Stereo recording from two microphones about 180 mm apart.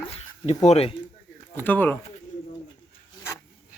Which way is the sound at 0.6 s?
35° left (ahead or behind).